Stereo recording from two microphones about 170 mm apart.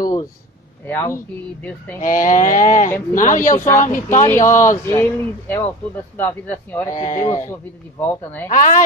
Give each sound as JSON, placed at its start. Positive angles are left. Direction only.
{"t": 0.8, "sound": "speech", "side_deg": 15}
{"t": 2.0, "sound": "speech", "side_deg": 50}
{"t": 3.5, "sound": "speech", "side_deg": 15}
{"t": 3.8, "sound": "speech", "side_deg": 50}
{"t": 4.2, "sound": "speech", "side_deg": 15}
{"t": 7.1, "sound": "speech", "side_deg": 45}
{"t": 8.0, "sound": "speech", "side_deg": 10}
{"t": 8.5, "sound": "speech", "side_deg": 50}